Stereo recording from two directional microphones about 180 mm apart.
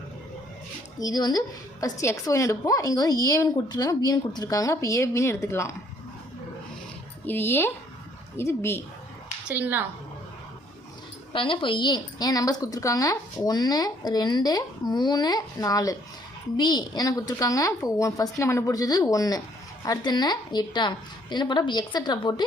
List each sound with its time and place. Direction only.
0.9 s a woman's voice: 20° left (ahead or behind)
7.3 s speech: 10° left (ahead or behind)
9.5 s a woman's voice: 10° right (ahead or behind)
11.3 s a woman's voice: 30° left (ahead or behind)